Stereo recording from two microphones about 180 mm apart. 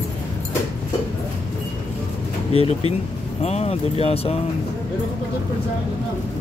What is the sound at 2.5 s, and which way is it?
Speech, 35° left (ahead or behind).